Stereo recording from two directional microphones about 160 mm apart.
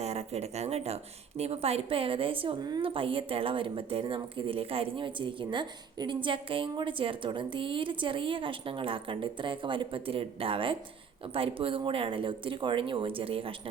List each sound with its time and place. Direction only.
0.0 s a woman's voice: 45° right (ahead or behind)